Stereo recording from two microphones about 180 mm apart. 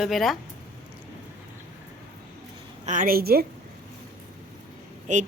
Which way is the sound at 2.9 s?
50° right (ahead or behind).